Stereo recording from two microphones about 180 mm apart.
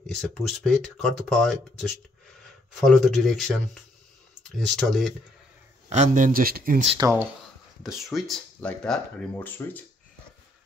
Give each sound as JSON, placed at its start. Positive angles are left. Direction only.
{"t": 0.0, "sound": "speech", "side_deg": 5}
{"t": 5.9, "sound": "speech", "side_deg": -45}
{"t": 7.0, "sound": "speech", "side_deg": -15}
{"t": 7.8, "sound": "speech", "side_deg": 0}